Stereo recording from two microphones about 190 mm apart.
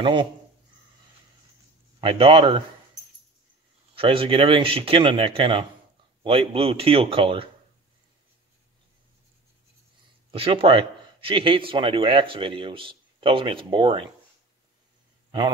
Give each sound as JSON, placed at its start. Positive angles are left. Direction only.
{"t": 0.0, "sound": "a man's voice", "side_deg": -25}
{"t": 2.0, "sound": "a man's voice", "side_deg": -25}
{"t": 3.9, "sound": "a man's voice", "side_deg": -30}
{"t": 10.3, "sound": "a man's voice", "side_deg": -30}